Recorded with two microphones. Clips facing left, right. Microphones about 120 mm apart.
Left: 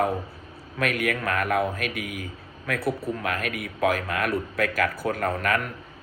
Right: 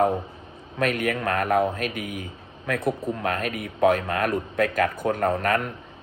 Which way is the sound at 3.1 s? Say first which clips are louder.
Right 2 dB; 30° right (ahead or behind).